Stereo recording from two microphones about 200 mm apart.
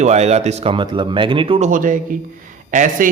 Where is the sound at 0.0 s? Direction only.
35° right (ahead or behind).